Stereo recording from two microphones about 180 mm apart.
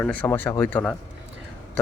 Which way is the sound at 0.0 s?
10° left (ahead or behind).